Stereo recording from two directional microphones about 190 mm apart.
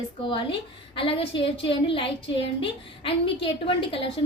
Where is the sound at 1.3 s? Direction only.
70° left (ahead or behind).